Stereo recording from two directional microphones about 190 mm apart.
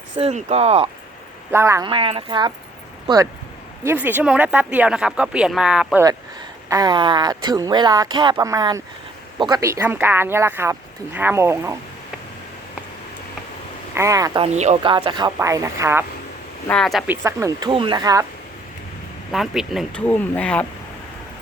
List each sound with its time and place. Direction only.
0.2 s speech: 35° right (ahead or behind)
1.5 s speech: 15° right (ahead or behind)
1.9 s speech: 30° right (ahead or behind)
3.8 s speech: 10° right (ahead or behind)
6.7 s speech: 20° right (ahead or behind)
13.9 s speech: 15° right (ahead or behind)
14.4 s speech: 35° right (ahead or behind)
14.9 s speech: 25° right (ahead or behind)
16.6 s speech: 5° left (ahead or behind)
17.1 s speech: 15° right (ahead or behind)
17.7 s speech: 25° right (ahead or behind)
19.3 s speech: centre (ahead or behind)